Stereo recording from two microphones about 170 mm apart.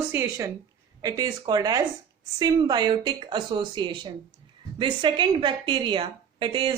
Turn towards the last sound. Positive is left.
turn(degrees=-30)  # may be behind; listen again after turning